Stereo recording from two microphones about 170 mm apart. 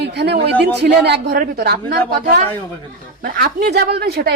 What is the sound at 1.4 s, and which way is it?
Speech, 60° right (ahead or behind).